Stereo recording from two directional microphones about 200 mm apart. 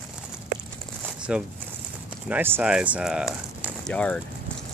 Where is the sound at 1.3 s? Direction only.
5° right (ahead or behind).